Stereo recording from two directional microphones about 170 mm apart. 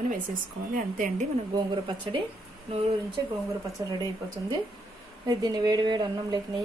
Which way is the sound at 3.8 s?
20° right (ahead or behind).